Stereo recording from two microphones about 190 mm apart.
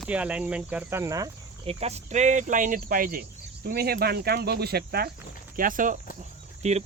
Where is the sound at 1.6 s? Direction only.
30° right (ahead or behind).